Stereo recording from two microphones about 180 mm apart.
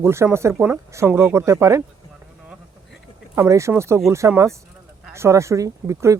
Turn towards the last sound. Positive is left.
turn(degrees=-15)  # may be behind; listen again after turning